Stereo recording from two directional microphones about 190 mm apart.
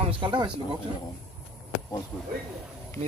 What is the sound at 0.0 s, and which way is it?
Speech, 25° right (ahead or behind).